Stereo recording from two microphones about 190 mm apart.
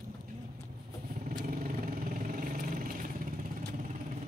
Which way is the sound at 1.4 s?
50° right (ahead or behind).